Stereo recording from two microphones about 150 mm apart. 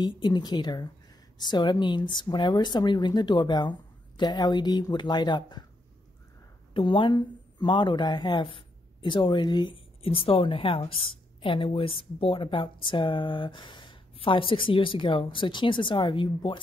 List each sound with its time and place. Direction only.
0.0 s speech: 30° left (ahead or behind)
6.7 s speech: 35° left (ahead or behind)